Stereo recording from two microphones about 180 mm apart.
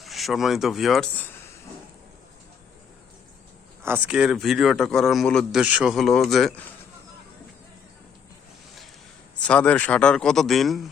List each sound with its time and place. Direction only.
0.0 s speech: centre (ahead or behind)
3.8 s a man's voice: 10° right (ahead or behind)
9.4 s a man's voice: 5° left (ahead or behind)